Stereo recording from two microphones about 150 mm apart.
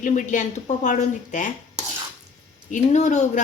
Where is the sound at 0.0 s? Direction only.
55° left (ahead or behind).